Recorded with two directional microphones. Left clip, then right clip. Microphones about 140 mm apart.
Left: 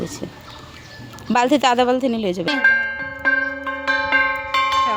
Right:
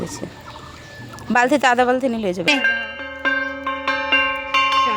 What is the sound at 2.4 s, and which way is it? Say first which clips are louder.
Bell: left 2 dB; 5° right (ahead or behind).